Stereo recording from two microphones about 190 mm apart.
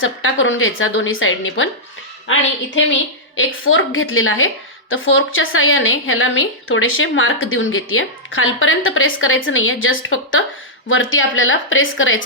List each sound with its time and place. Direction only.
0.0 s a woman's voice: 90° left
2.7 s a woman's voice: 85° left